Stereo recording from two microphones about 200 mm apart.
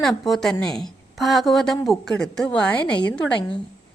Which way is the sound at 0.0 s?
Centre (ahead or behind).